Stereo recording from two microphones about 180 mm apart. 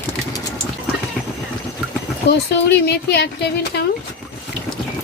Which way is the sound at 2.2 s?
65° left (ahead or behind).